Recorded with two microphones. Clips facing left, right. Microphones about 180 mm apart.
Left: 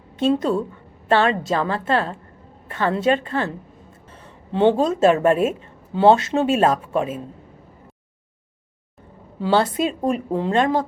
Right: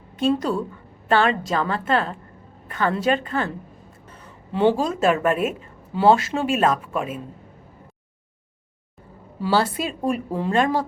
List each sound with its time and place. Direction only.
0.2 s speech: 25° left (ahead or behind)
4.5 s speech: 25° left (ahead or behind)
9.4 s speech: 20° left (ahead or behind)